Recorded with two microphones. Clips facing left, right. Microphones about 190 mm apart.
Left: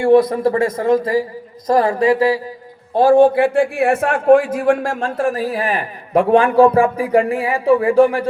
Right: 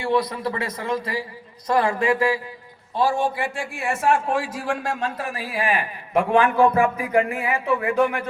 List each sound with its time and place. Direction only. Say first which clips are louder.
0.0 s a man's voice: left 11 dB; 50° left (ahead or behind)
2.9 s a man's voice: left 11 dB; 55° left (ahead or behind); by 8.3 s 30° left (ahead or behind)